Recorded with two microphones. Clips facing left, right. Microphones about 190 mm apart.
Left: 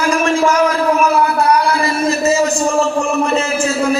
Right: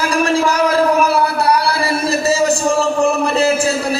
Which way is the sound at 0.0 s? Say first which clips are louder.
Left 1 dB; 35° right (ahead or behind).